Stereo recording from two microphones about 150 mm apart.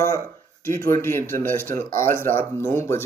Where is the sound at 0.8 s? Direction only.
15° left (ahead or behind).